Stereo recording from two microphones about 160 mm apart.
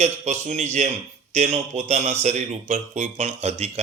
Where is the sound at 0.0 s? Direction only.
45° right (ahead or behind).